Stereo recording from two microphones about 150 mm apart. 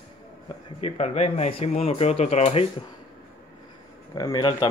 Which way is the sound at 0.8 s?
45° left (ahead or behind).